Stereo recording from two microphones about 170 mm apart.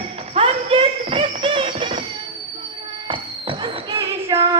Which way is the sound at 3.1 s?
30° right (ahead or behind).